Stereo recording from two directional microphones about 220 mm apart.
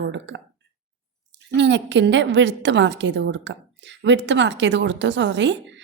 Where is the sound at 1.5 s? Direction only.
55° right (ahead or behind).